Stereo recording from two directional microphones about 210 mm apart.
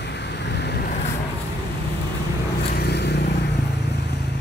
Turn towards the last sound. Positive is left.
turn(degrees=55)  # may be behind; listen again after turning